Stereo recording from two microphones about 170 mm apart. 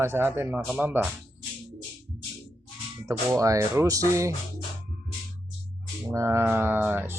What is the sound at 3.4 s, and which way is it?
Speech, 20° right (ahead or behind).